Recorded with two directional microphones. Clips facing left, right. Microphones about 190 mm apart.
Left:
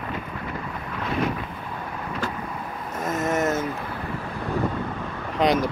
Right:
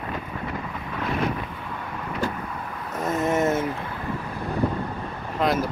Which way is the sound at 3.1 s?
30° right (ahead or behind).